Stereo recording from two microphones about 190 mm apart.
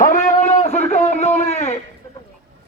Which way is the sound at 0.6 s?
35° left (ahead or behind).